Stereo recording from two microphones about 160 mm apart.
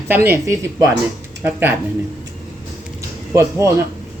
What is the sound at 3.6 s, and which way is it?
Speech, 20° right (ahead or behind).